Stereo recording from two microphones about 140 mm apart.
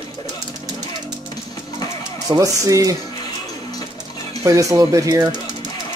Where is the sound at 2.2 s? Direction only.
25° right (ahead or behind).